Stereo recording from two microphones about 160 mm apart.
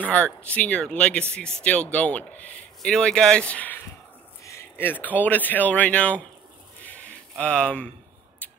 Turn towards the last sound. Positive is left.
turn(degrees=5)  # may be behind; listen again after turning